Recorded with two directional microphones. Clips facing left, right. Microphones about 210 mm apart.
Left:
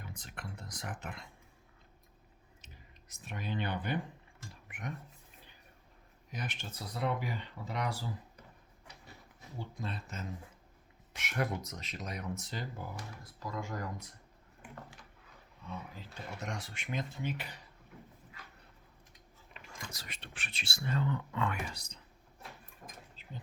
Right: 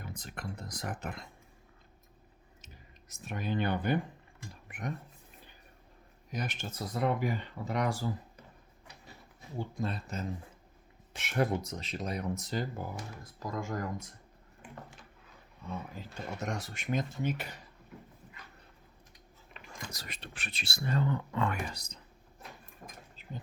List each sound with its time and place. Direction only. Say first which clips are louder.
0.0 s speech: right 5 dB; 40° right (ahead or behind)
3.1 s speech: right 5 dB; 45° right (ahead or behind)
6.3 s speech: right 5 dB; 40° right (ahead or behind)
9.6 s speech: right 6 dB; 45° right (ahead or behind)
16.0 s speech: right 5 dB; 45° right (ahead or behind)
19.9 s speech: right 3 dB; 40° right (ahead or behind)
23.2 s a sound: right 5 dB; 45° right (ahead or behind)